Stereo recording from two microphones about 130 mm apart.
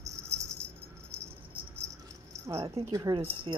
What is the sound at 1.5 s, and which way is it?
Cricket, 15° right (ahead or behind).